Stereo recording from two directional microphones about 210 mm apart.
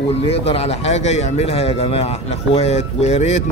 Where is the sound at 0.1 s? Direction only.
25° left (ahead or behind).